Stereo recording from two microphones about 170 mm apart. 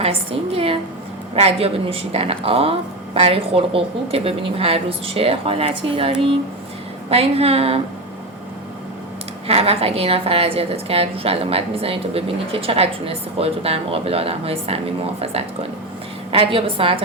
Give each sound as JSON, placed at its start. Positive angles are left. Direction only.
{"t": 0.0, "sound": "a woman's voice", "side_deg": -35}
{"t": 9.5, "sound": "a woman's voice", "side_deg": -35}